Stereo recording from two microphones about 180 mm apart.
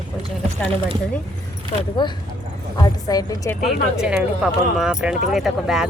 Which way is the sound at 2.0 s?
25° left (ahead or behind).